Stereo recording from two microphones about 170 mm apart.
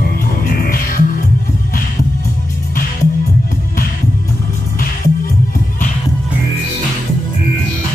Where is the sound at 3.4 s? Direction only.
55° left (ahead or behind).